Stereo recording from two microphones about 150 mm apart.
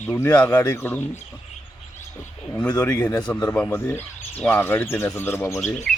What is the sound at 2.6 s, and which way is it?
Speech, 10° left (ahead or behind).